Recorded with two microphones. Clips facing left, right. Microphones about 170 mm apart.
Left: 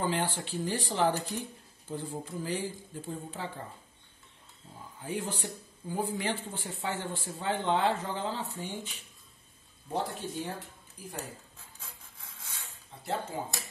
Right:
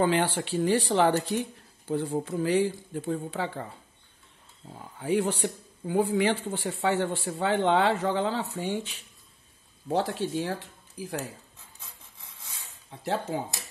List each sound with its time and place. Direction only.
0.0 s speech: 75° right (ahead or behind)
4.6 s speech: 85° right
5.0 s speech: 75° right (ahead or behind)
9.8 s speech: 90° right
13.0 s speech: 80° right